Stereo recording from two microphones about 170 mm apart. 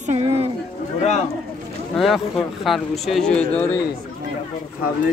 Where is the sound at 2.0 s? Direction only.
Centre (ahead or behind).